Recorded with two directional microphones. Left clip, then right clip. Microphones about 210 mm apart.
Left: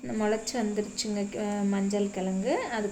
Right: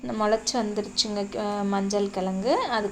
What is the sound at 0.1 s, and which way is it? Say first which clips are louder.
Speech: right 5 dB; 60° right (ahead or behind).